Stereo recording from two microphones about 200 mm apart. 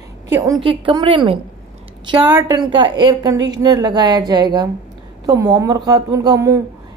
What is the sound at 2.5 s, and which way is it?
A woman's voice, 20° right (ahead or behind).